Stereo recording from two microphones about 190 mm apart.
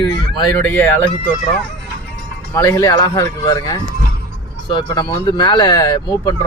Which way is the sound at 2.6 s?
20° left (ahead or behind).